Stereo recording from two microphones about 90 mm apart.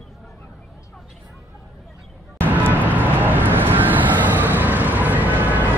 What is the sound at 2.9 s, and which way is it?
Vehicle, 20° right (ahead or behind).